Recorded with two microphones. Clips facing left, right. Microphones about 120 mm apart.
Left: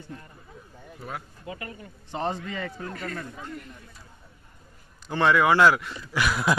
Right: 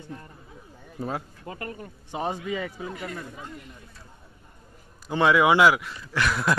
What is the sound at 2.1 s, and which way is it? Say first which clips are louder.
A man's voice: right 1 dB; 10° right (ahead or behind).